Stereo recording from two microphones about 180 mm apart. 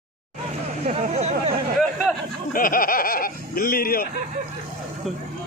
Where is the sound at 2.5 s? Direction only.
50° left (ahead or behind).